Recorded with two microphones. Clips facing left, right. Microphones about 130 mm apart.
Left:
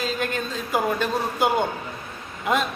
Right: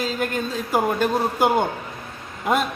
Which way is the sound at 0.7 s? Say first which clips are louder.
Right 3 dB; 50° right (ahead or behind).